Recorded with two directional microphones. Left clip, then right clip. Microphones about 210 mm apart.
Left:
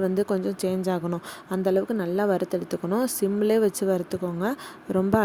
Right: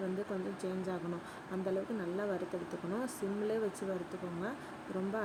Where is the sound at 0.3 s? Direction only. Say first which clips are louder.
Left 13 dB; 50° left (ahead or behind).